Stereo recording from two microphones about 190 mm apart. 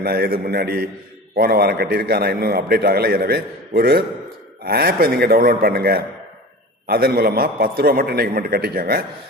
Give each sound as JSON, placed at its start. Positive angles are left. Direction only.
{"t": 0.0, "sound": "a man's voice", "side_deg": -55}